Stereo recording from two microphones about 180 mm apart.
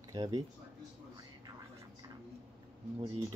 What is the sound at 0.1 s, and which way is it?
Speech, 20° right (ahead or behind).